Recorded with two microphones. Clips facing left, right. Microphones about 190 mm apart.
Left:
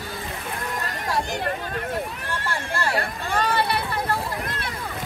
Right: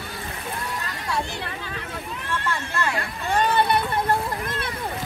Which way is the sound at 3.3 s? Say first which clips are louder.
Right 3 dB; 20° right (ahead or behind).